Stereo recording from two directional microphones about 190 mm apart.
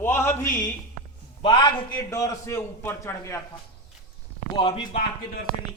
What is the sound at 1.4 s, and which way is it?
A man's voice, 25° left (ahead or behind).